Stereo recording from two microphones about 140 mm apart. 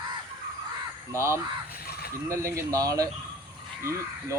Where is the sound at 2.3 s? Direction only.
20° right (ahead or behind).